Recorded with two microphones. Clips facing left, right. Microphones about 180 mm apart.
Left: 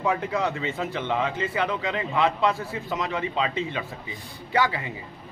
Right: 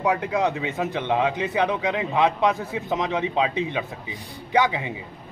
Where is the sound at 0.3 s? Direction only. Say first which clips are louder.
Right 3 dB; 15° right (ahead or behind).